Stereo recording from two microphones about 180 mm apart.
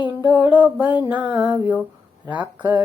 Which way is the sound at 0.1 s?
10° right (ahead or behind).